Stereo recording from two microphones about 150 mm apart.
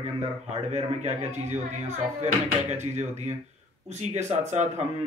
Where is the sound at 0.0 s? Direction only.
50° right (ahead or behind).